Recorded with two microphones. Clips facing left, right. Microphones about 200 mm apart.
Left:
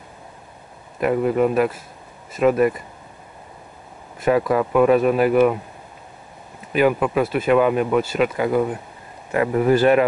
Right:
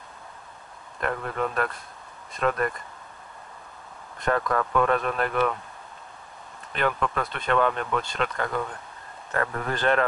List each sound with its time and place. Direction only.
0.9 s speech: 10° left (ahead or behind)
4.2 s speech: 10° left (ahead or behind)
6.7 s speech: 10° left (ahead or behind)